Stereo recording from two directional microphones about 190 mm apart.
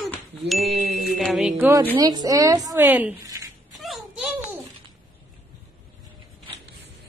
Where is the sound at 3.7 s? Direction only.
Centre (ahead or behind).